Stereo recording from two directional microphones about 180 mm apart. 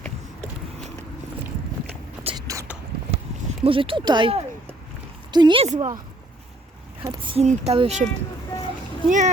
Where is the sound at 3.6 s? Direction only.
30° right (ahead or behind).